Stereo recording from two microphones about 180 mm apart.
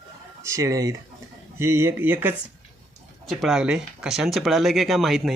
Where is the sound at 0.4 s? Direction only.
15° right (ahead or behind).